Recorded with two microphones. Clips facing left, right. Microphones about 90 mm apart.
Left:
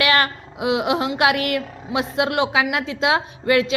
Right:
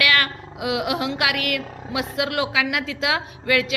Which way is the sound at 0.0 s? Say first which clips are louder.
Left 3 dB; 30° left (ahead or behind).